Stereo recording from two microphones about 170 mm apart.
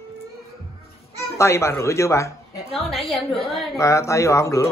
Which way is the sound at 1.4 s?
15° left (ahead or behind).